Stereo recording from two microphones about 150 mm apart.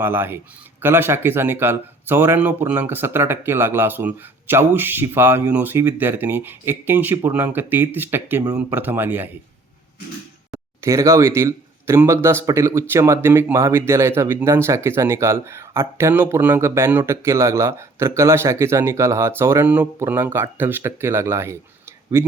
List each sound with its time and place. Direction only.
0.0 s speech: 15° right (ahead or behind)
10.5 s speech: 20° right (ahead or behind)